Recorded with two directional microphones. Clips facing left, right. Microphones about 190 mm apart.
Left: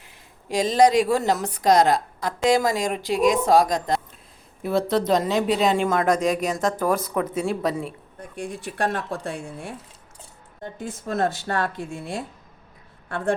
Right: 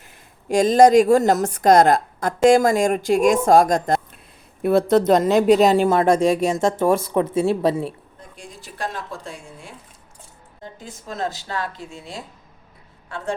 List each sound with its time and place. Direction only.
0.0 s a woman's voice: 50° right (ahead or behind); by 7.9 s 30° right (ahead or behind)
8.4 s a woman's voice: 60° left (ahead or behind)